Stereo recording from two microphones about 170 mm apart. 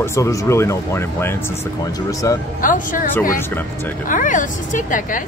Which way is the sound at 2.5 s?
50° left (ahead or behind).